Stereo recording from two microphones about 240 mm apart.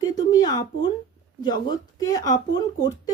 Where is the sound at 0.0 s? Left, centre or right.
Centre.